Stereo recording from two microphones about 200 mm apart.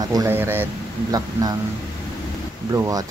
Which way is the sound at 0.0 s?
15° right (ahead or behind).